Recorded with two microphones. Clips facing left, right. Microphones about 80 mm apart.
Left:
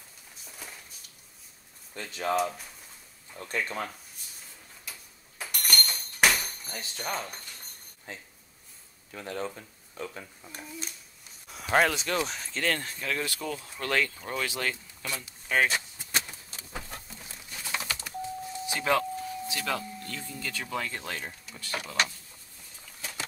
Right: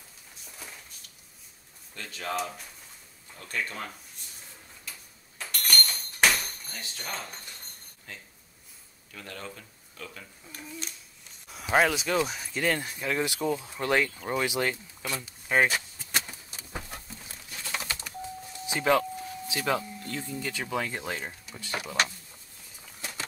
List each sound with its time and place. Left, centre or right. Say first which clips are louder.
0.4 s a sound: even; centre
2.0 s speech: left 3 dB; left
2.3 s speech: left 4 dB; centre
3.3 s speech: left 2 dB; left
5.4 s a sound: right 1 dB; centre
7.0 s speech: left 5 dB; centre
8.1 s speech: left 3 dB; left
10.7 s speech: even; centre
16.3 s pigeon: right 1 dB; centre
17.6 s a sound: left 1 dB; centre
18.7 s vehicle: right 3 dB; right
19.5 s speech: right 6 dB; centre